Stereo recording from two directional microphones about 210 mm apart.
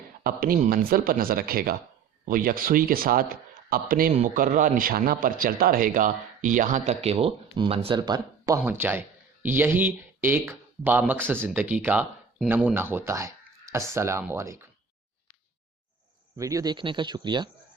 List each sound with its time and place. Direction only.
0.2 s a man's voice: 45° right (ahead or behind); by 14.7 s 15° right (ahead or behind)
16.4 s speech: 15° right (ahead or behind)